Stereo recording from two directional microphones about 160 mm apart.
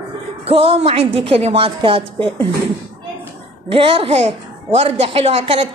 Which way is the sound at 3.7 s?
35° right (ahead or behind).